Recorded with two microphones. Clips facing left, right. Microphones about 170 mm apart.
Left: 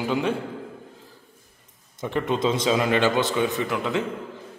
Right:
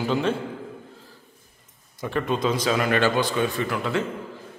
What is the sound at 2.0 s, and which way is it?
A man's voice, 20° left (ahead or behind).